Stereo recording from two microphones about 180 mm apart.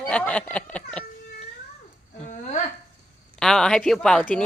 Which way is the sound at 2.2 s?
40° left (ahead or behind).